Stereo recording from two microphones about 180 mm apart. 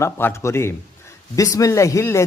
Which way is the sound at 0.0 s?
15° left (ahead or behind).